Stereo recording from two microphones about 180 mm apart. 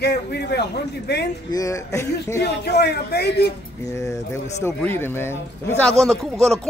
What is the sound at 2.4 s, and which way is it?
A man's voice, 65° left (ahead or behind).